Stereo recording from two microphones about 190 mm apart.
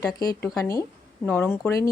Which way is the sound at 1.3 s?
10° left (ahead or behind).